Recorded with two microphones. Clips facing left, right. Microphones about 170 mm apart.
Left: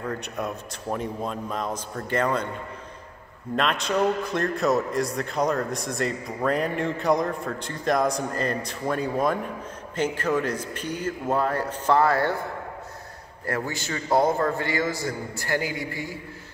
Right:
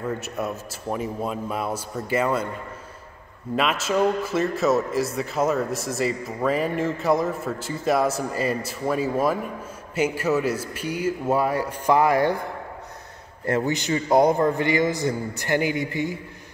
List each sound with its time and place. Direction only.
0.0 s a man's voice: 5° right (ahead or behind)
3.5 s a man's voice: 5° right (ahead or behind)
13.5 s a man's voice: 20° right (ahead or behind)